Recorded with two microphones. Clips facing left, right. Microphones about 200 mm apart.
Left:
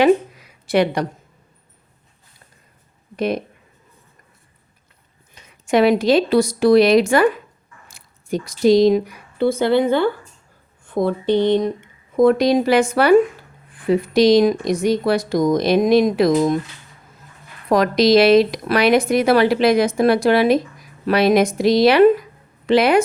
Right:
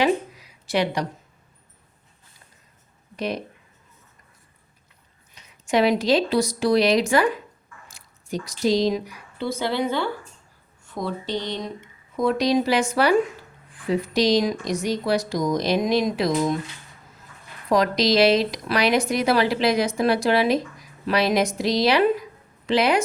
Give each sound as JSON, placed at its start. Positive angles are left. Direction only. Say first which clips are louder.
{"t": 0.0, "sound": "a sound", "louder": "left 7 dB", "side_deg": 55}
{"t": 3.2, "sound": "speech", "louder": "left 6 dB", "side_deg": 55}
{"t": 5.3, "sound": "speech", "louder": "left 5 dB", "side_deg": 55}
{"t": 17.7, "sound": "a woman's voice", "louder": "left 6 dB", "side_deg": 55}